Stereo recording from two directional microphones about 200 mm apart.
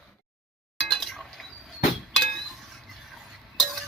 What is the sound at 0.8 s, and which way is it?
Chink, centre (ahead or behind).